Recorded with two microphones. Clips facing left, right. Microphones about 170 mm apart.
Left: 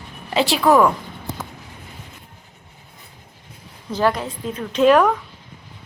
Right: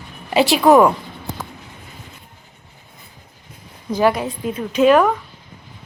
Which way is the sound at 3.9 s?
10° right (ahead or behind).